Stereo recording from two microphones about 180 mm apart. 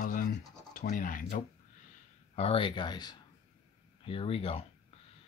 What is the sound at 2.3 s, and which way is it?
Speech, 30° left (ahead or behind).